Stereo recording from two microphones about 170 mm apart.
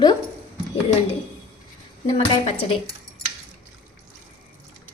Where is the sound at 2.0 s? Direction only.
35° left (ahead or behind).